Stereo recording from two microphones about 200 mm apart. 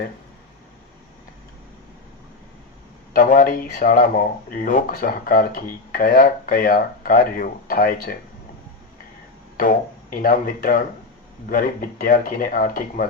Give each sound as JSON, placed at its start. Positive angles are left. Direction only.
{"t": 3.1, "sound": "speech", "side_deg": 40}
{"t": 9.6, "sound": "speech", "side_deg": 45}